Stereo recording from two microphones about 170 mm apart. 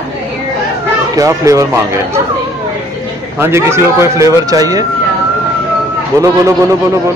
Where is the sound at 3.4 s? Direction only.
15° right (ahead or behind).